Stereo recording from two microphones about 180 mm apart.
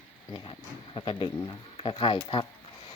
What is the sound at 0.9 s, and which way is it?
Speech, 25° left (ahead or behind).